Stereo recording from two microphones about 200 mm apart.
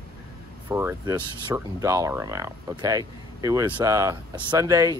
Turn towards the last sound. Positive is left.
turn(degrees=-15)  # may be behind; listen again after turning